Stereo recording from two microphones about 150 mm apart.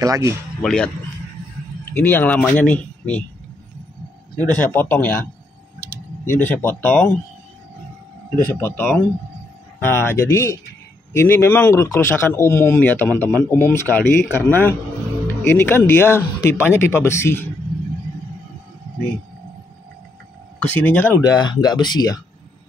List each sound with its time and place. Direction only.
0.0 s speech: 20° right (ahead or behind)
0.6 s speech: 5° left (ahead or behind)
1.9 s speech: 10° left (ahead or behind)
4.4 s speech: 10° left (ahead or behind)
8.5 s speech: 15° left (ahead or behind)
20.5 s speech: 10° left (ahead or behind)
21.2 s speech: 25° left (ahead or behind)